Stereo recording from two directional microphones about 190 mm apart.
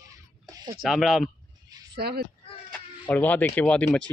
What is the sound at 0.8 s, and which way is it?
Speech, centre (ahead or behind).